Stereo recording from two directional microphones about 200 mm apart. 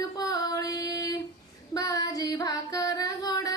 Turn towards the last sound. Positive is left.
turn(degrees=20)  # may be behind; listen again after turning